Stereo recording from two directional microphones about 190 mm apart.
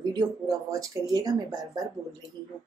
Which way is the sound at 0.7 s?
20° right (ahead or behind).